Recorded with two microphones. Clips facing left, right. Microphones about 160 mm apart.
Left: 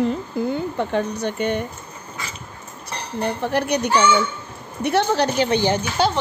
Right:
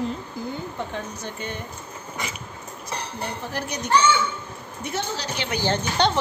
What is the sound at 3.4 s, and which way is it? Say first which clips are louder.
Speech: left 9 dB; 65° left (ahead or behind).